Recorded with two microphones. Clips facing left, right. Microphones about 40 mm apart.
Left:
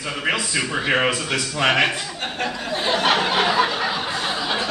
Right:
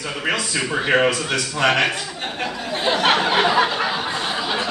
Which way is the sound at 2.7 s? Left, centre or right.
Centre.